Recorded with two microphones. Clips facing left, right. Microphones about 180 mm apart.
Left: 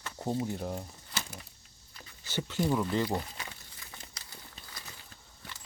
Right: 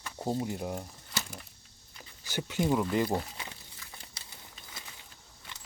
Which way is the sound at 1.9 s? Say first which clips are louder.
Even; 10° right (ahead or behind).